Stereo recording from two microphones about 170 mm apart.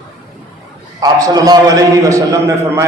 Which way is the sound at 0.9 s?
20° right (ahead or behind).